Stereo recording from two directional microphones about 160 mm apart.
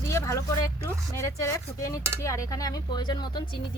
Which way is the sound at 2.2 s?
20° left (ahead or behind).